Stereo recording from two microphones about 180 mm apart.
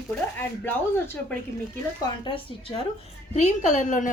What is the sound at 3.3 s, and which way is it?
Speech, 40° left (ahead or behind).